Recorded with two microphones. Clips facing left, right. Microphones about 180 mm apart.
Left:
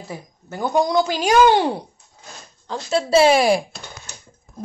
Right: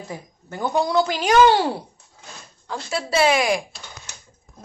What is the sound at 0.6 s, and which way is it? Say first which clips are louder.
Speech: left 2 dB; 15° left (ahead or behind).